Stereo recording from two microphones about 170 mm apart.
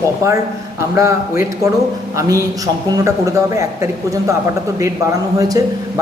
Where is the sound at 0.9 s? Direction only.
20° right (ahead or behind).